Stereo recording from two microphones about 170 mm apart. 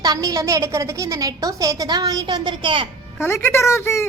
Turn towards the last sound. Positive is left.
turn(degrees=15)  # may be behind; listen again after turning